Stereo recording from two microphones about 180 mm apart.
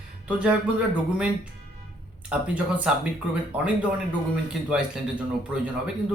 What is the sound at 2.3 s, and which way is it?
Speech, 5° right (ahead or behind).